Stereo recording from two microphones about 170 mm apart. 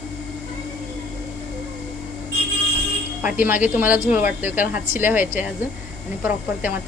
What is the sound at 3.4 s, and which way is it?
Speech, 10° right (ahead or behind).